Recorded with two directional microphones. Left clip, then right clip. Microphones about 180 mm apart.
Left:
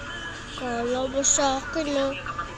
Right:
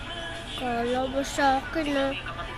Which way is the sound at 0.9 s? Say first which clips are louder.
Left 3 dB; 10° right (ahead or behind).